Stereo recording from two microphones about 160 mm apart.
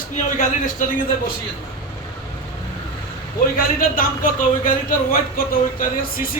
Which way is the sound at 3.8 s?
55° left (ahead or behind).